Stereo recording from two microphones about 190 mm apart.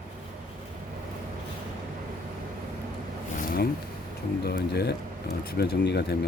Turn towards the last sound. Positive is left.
turn(degrees=60)  # may be behind; listen again after turning